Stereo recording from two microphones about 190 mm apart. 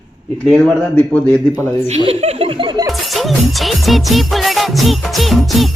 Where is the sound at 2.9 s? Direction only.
Centre (ahead or behind).